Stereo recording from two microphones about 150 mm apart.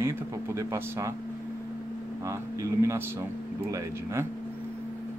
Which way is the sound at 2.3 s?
20° right (ahead or behind).